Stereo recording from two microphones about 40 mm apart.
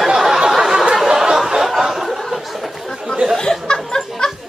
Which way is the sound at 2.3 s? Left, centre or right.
Centre.